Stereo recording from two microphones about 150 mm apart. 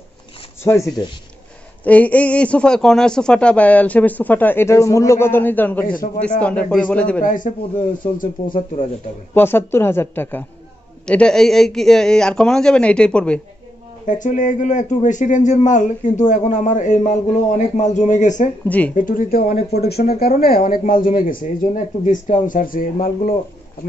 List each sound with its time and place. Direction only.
0.7 s speech: 20° left (ahead or behind)
1.9 s speech: 10° left (ahead or behind)
7.2 s speech: 65° left (ahead or behind)
9.3 s a man's voice: 15° left (ahead or behind)
14.0 s a man's voice: 55° left (ahead or behind)
18.7 s speech: 10° left (ahead or behind)
18.9 s speech: 65° left (ahead or behind)
19.7 s speech: 90° left; by 23.3 s 70° left (ahead or behind)